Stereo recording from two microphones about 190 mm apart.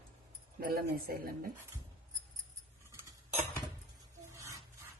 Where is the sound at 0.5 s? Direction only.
50° right (ahead or behind).